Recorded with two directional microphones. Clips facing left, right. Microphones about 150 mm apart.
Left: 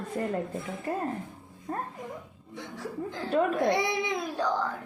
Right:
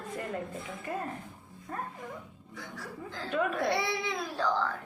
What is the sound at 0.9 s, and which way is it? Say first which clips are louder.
Speech: left 5 dB; 35° left (ahead or behind).